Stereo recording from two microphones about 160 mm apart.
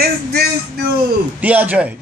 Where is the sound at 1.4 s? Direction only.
10° right (ahead or behind).